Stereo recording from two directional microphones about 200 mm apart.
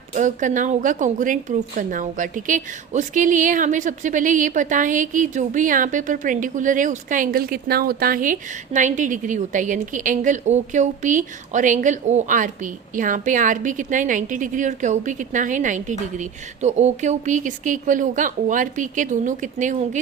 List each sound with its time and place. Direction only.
0.1 s a woman's voice: 40° right (ahead or behind)